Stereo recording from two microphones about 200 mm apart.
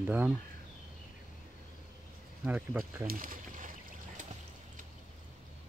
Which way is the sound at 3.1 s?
45° right (ahead or behind).